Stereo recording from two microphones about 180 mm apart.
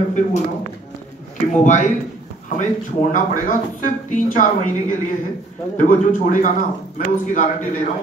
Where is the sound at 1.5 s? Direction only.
45° left (ahead or behind).